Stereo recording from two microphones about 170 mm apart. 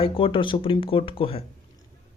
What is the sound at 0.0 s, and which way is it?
Speech, 30° left (ahead or behind).